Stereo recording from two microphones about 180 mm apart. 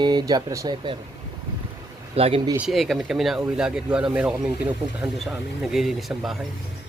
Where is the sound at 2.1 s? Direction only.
35° right (ahead or behind).